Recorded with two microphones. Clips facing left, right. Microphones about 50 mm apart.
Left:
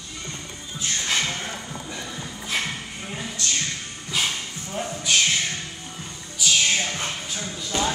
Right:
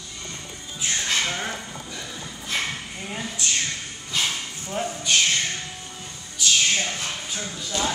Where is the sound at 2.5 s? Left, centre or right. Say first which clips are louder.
Even; centre.